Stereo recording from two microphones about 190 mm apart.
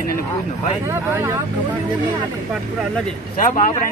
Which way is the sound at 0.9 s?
10° right (ahead or behind).